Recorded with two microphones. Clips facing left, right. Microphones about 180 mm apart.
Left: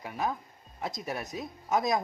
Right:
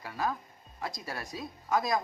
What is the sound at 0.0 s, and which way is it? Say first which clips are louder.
Speech: left 1 dB; 20° left (ahead or behind).